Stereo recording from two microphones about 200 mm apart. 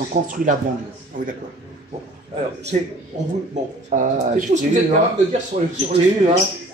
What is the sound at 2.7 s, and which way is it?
A woman's voice, 35° right (ahead or behind).